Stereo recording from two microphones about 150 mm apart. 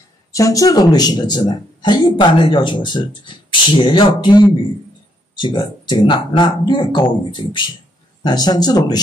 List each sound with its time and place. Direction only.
0.3 s speech: 25° left (ahead or behind)